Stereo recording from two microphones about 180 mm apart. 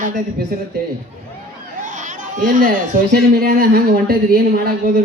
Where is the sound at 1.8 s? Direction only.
45° right (ahead or behind).